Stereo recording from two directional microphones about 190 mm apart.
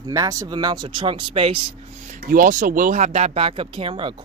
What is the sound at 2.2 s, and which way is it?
Speech, 45° right (ahead or behind).